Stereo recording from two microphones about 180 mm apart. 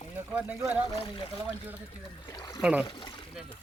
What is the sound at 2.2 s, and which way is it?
Speech, 20° left (ahead or behind).